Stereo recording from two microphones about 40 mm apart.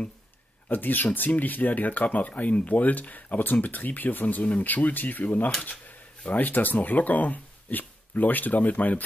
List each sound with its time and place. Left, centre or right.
0.7 s speech: left